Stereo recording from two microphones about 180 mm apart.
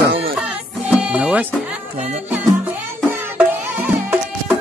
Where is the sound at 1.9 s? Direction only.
40° right (ahead or behind).